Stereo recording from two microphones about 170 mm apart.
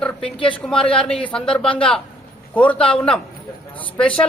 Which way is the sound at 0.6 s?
5° left (ahead or behind).